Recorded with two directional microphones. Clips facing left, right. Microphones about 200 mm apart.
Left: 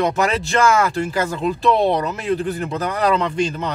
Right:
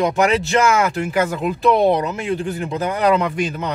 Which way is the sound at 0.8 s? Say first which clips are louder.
Right 1 dB; 15° right (ahead or behind).